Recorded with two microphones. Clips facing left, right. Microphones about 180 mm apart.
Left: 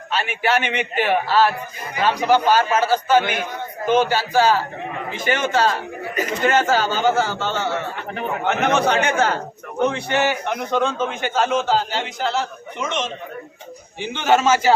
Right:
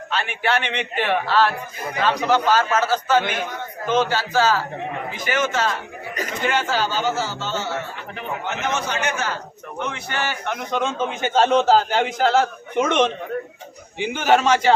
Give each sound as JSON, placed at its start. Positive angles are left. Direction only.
{"t": 0.1, "sound": "a man's voice", "side_deg": 5}
{"t": 5.1, "sound": "a man's voice", "side_deg": 30}
{"t": 6.4, "sound": "a man's voice", "side_deg": 45}
{"t": 10.1, "sound": "a man's voice", "side_deg": 20}
{"t": 10.6, "sound": "a man's voice", "side_deg": 0}
{"t": 11.1, "sound": "a man's voice", "side_deg": -25}
{"t": 14.0, "sound": "a man's voice", "side_deg": -10}
{"t": 14.3, "sound": "a man's voice", "side_deg": 5}